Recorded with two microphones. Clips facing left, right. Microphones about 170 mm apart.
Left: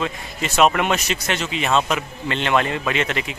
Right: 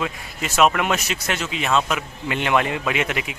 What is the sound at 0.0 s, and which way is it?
Speech, 5° right (ahead or behind).